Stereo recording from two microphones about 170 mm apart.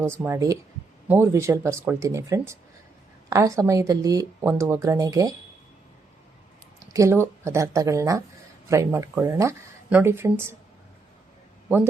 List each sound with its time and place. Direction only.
0.0 s a woman's voice: 15° right (ahead or behind)
6.9 s speech: 15° right (ahead or behind)